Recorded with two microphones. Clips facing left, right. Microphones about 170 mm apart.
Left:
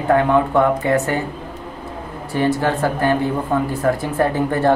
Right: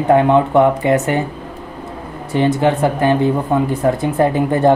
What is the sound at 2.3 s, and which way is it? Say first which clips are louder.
Speech: right 4 dB; 20° right (ahead or behind).